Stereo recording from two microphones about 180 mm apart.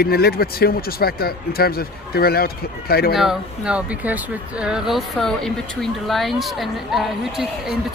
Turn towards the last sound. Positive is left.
turn(degrees=0)  # may be behind; listen again after turning